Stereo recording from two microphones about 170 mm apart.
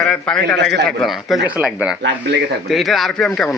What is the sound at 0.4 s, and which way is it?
Speech, 85° right.